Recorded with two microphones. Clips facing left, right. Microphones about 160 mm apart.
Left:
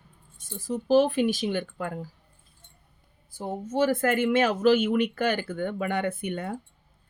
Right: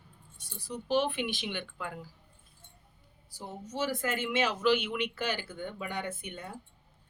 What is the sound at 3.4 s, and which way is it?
Speech, 50° left (ahead or behind).